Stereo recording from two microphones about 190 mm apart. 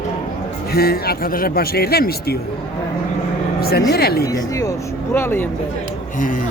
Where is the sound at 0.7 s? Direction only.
55° left (ahead or behind).